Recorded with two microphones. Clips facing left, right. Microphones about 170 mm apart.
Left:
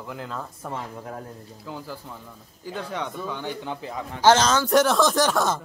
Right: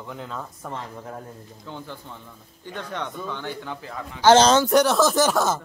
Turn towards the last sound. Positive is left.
turn(degrees=-5)  # may be behind; listen again after turning